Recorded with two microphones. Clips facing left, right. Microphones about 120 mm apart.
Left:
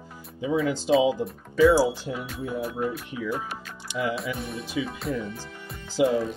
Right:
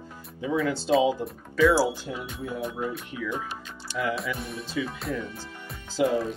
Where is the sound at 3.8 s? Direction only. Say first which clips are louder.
Left 1 dB; 20° left (ahead or behind).